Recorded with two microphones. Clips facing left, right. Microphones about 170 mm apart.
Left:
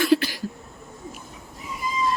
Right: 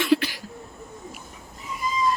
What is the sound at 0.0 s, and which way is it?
Cough, 40° left (ahead or behind).